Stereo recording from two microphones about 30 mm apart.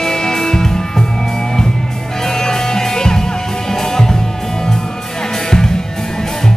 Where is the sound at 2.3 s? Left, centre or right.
Centre.